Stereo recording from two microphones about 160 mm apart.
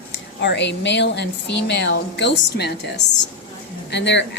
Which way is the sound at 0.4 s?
90° left.